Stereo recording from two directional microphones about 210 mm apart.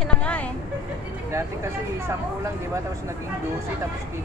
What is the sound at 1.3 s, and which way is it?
Speech, 15° right (ahead or behind).